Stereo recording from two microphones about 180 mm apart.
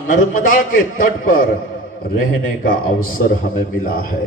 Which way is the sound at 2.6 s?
50° left (ahead or behind).